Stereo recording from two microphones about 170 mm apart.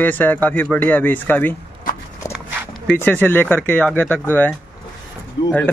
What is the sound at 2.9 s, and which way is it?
Speech, 10° left (ahead or behind).